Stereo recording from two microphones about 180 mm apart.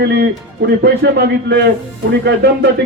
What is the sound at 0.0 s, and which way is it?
A man's voice, 65° right (ahead or behind).